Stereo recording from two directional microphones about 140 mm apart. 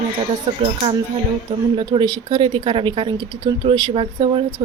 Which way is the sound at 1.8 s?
30° right (ahead or behind).